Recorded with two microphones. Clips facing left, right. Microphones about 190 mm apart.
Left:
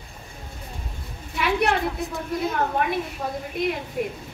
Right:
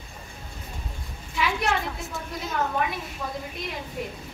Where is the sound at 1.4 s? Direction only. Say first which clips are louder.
Left 4 dB; 60° left (ahead or behind).